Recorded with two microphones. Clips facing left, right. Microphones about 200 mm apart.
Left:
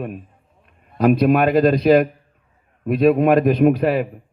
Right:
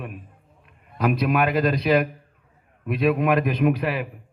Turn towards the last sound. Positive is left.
turn(degrees=45)  # may be behind; listen again after turning